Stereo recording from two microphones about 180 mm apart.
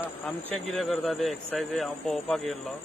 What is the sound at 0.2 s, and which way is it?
Speech, 5° left (ahead or behind).